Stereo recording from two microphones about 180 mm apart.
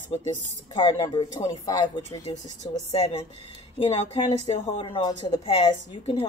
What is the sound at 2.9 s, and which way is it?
A woman's voice, 35° left (ahead or behind).